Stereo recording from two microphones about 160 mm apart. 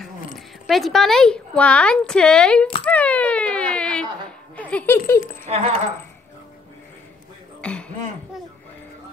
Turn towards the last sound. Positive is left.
turn(degrees=5)  # may be behind; listen again after turning